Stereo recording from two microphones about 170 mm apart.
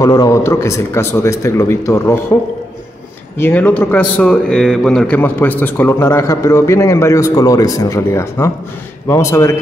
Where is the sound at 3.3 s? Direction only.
10° left (ahead or behind).